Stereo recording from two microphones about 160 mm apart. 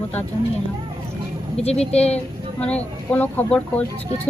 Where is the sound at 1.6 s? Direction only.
40° left (ahead or behind).